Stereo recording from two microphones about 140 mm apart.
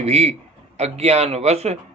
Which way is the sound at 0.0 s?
50° right (ahead or behind).